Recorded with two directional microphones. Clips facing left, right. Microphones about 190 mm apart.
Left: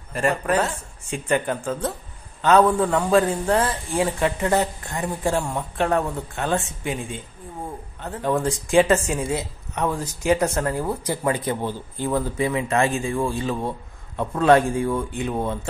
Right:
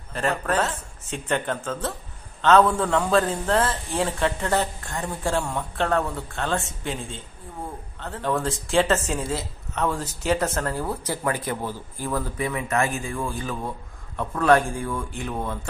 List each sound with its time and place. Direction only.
0.1 s speech: 10° left (ahead or behind); by 15.6 s 25° left (ahead or behind)